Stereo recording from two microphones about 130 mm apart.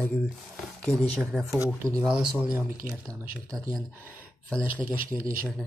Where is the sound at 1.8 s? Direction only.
25° right (ahead or behind).